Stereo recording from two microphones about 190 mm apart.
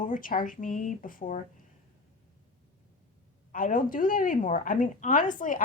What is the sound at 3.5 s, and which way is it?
Speech, 45° left (ahead or behind).